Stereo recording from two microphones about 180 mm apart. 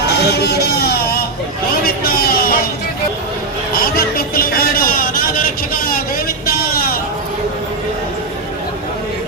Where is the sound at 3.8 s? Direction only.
55° left (ahead or behind).